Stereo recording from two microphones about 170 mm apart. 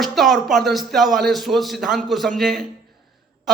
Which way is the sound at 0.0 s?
Centre (ahead or behind).